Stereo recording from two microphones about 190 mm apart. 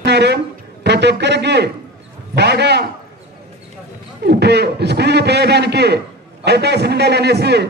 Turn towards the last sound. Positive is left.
turn(degrees=-60)  # may be behind; listen again after turning